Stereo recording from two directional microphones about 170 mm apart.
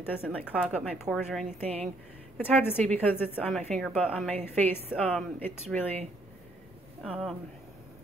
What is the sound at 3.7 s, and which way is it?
Speech, 5° right (ahead or behind).